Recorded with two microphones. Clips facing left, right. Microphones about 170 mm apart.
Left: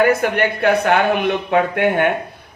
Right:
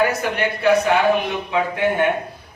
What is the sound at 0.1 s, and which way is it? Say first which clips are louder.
Speech: left 5 dB; 55° left (ahead or behind).